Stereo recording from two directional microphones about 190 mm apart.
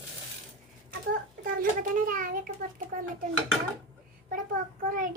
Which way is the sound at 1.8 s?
45° right (ahead or behind).